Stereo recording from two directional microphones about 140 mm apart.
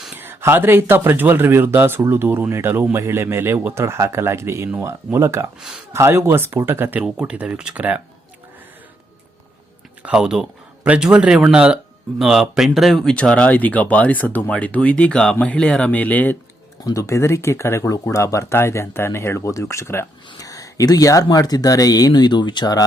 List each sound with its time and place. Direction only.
0.2 s a man's voice: 15° right (ahead or behind)
5.5 s speech: 5° right (ahead or behind)
5.9 s a man's voice: 20° right (ahead or behind)
10.0 s a man's voice: 5° right (ahead or behind); by 16.4 s 10° left (ahead or behind)
16.8 s speech: 20° left (ahead or behind)